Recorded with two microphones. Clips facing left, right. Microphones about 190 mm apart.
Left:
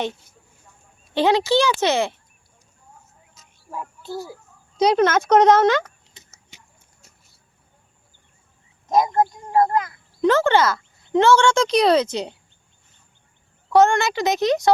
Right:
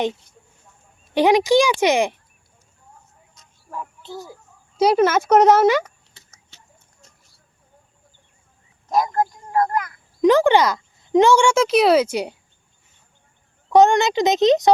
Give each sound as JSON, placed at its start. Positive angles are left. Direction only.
{"t": 1.1, "sound": "speech", "side_deg": -15}
{"t": 3.3, "sound": "a sound", "side_deg": 5}
{"t": 4.8, "sound": "speech", "side_deg": -5}
{"t": 6.2, "sound": "a sound", "side_deg": 20}
{"t": 6.5, "sound": "clip-clop", "side_deg": 15}
{"t": 7.0, "sound": "a sound", "side_deg": 10}
{"t": 8.9, "sound": "speech", "side_deg": 20}
{"t": 10.2, "sound": "speech", "side_deg": -15}
{"t": 13.7, "sound": "a child's voice", "side_deg": -15}